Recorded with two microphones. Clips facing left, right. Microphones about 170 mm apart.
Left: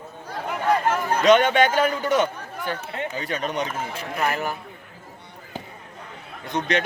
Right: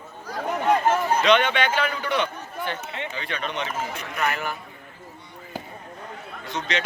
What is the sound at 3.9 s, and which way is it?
Speech, 30° left (ahead or behind).